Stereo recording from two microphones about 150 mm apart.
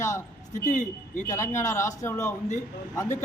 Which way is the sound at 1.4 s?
20° left (ahead or behind).